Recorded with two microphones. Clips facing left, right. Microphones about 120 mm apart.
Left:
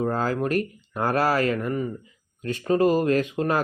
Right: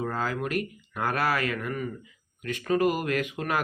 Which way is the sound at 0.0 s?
40° left (ahead or behind).